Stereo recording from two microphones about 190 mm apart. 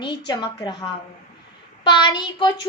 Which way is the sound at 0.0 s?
25° left (ahead or behind).